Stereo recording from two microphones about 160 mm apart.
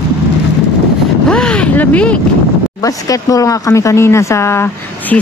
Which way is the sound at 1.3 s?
5° left (ahead or behind).